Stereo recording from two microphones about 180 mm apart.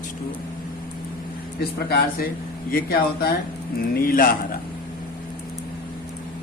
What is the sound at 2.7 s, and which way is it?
Speech, 55° left (ahead or behind).